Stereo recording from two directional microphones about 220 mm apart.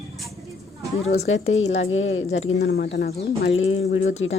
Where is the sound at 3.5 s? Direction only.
65° left (ahead or behind).